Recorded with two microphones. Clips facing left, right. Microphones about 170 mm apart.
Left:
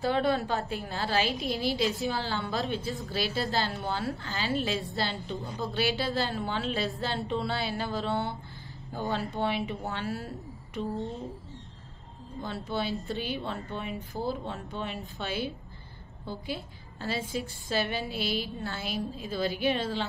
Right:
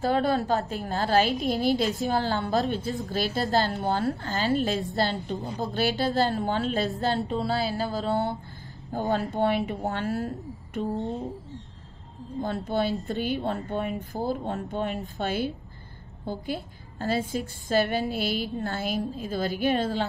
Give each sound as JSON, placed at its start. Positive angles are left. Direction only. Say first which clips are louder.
{"t": 0.0, "sound": "a woman's voice", "louder": "right 3 dB", "side_deg": -40}
{"t": 2.8, "sound": "speech", "louder": "right 4 dB", "side_deg": 0}
{"t": 3.1, "sound": "a woman's voice", "louder": "right 5 dB", "side_deg": -45}
{"t": 12.4, "sound": "a woman's voice", "louder": "right 6 dB", "side_deg": -50}